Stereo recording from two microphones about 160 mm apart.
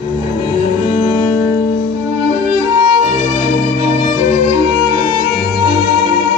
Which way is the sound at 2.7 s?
30° right (ahead or behind).